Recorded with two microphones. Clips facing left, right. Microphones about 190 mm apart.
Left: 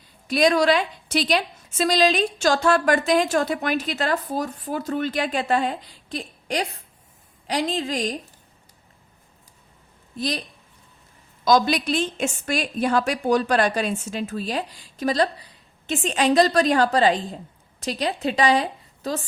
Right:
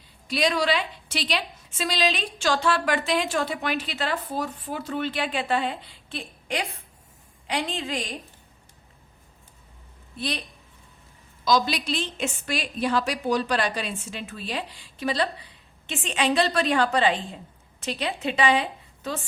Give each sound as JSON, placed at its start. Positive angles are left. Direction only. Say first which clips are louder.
{"t": 0.3, "sound": "a woman's voice", "louder": "left 6 dB", "side_deg": 45}
{"t": 10.2, "sound": "a woman's voice", "louder": "left 4 dB", "side_deg": 40}
{"t": 11.4, "sound": "a woman's voice", "louder": "left 4 dB", "side_deg": 50}